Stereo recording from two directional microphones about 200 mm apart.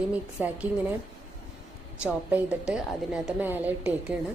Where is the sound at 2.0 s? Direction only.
5° right (ahead or behind).